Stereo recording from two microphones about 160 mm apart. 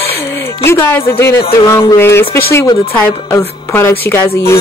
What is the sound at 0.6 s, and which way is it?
Music, 15° left (ahead or behind).